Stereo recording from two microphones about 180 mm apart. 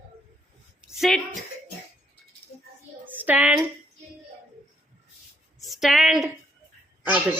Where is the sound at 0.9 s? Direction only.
Centre (ahead or behind).